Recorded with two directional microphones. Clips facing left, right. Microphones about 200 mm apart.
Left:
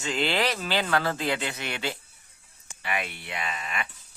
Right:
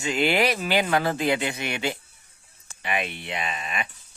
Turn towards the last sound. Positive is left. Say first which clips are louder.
# right 2 dB
turn(degrees=-20)  # may be behind; listen again after turning